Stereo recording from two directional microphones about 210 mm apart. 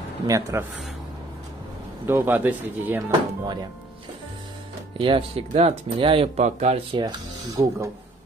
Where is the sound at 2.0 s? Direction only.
10° right (ahead or behind).